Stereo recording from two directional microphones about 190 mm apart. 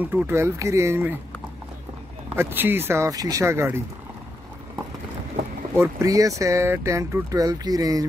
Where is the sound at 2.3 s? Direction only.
10° right (ahead or behind).